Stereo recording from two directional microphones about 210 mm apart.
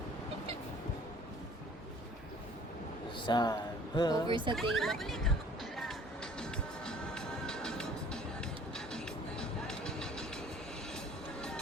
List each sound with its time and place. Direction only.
3.2 s speech: 20° left (ahead or behind)
4.3 s speech: 25° right (ahead or behind)
4.5 s speech: centre (ahead or behind)
5.7 s music: centre (ahead or behind)